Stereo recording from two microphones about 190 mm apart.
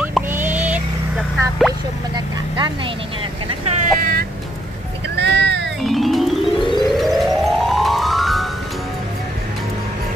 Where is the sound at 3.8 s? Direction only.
50° right (ahead or behind).